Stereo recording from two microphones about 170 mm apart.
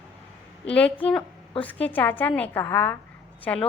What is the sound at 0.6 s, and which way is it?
A woman's voice, 5° left (ahead or behind).